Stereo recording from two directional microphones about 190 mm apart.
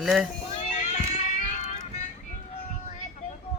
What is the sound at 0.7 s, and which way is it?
Music, 40° left (ahead or behind).